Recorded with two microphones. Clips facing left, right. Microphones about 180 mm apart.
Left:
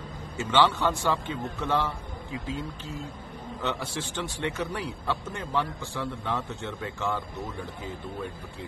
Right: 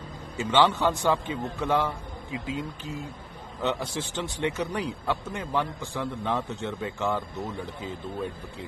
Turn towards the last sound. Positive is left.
turn(degrees=-20)  # may be behind; listen again after turning